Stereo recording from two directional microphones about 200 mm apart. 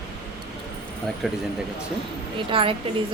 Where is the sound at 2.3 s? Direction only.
25° right (ahead or behind).